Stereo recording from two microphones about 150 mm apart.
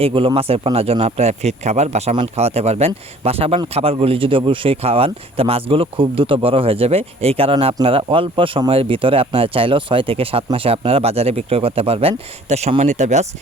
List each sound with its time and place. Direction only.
0.0 s speech: 35° right (ahead or behind); by 13.2 s 50° right (ahead or behind)